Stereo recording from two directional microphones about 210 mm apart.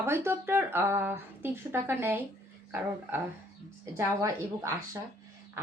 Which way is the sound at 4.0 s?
15° right (ahead or behind).